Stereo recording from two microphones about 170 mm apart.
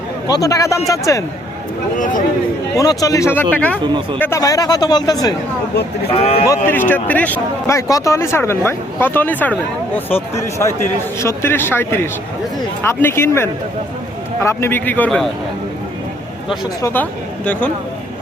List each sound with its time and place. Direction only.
0.3 s speech: 20° left (ahead or behind)
2.0 s speech: 50° left (ahead or behind)
2.7 s speech: 20° left (ahead or behind)
6.1 s speech: 35° left (ahead or behind)
6.7 s speech: 10° left (ahead or behind)
16.8 s speech: 10° left (ahead or behind)